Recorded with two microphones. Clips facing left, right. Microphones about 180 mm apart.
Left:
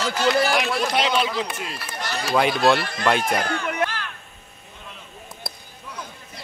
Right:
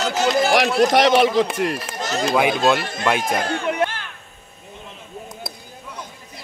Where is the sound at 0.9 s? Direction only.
70° right (ahead or behind).